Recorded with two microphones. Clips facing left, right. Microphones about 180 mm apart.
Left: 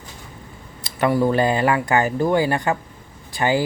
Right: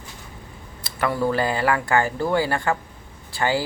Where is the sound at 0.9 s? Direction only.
20° left (ahead or behind).